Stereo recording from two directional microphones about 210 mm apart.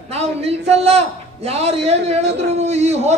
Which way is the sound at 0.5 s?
30° right (ahead or behind).